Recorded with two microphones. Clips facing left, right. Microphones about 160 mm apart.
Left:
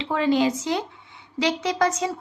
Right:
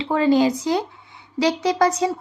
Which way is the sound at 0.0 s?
35° right (ahead or behind).